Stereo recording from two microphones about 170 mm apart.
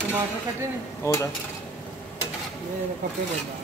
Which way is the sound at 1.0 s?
20° left (ahead or behind).